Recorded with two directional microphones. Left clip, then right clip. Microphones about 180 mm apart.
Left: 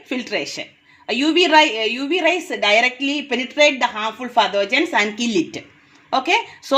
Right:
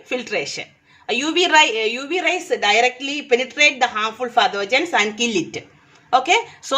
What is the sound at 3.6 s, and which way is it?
A woman's voice, 30° left (ahead or behind).